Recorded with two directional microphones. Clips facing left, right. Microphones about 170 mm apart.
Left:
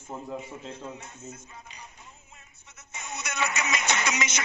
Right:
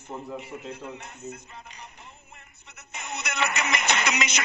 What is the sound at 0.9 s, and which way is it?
Music, 65° right (ahead or behind).